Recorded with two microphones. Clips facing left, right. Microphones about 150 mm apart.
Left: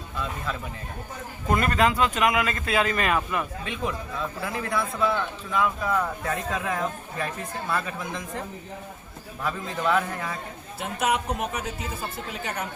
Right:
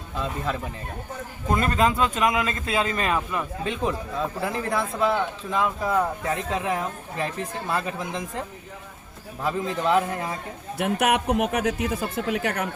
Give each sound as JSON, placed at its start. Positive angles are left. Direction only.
{"t": 1.5, "sound": "a man's voice", "side_deg": -25}
{"t": 9.4, "sound": "a man's voice", "side_deg": -25}
{"t": 10.8, "sound": "speech", "side_deg": -65}